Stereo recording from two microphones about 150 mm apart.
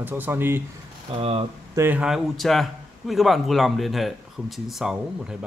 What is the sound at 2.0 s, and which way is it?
Speech, 5° right (ahead or behind).